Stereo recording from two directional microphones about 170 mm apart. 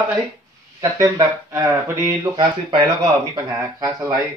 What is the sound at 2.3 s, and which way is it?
Speech, 30° right (ahead or behind).